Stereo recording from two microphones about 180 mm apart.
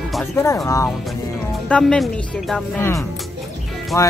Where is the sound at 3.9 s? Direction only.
15° left (ahead or behind).